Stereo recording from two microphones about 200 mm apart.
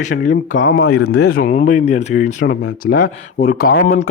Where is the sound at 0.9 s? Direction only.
90° left.